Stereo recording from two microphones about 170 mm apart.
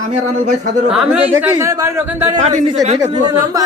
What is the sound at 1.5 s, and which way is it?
Speech, 20° right (ahead or behind).